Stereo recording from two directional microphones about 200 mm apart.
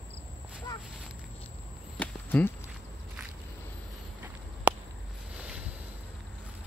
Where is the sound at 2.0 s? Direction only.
5° left (ahead or behind).